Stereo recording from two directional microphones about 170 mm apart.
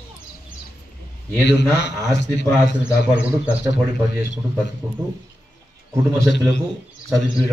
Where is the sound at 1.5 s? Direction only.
90° left.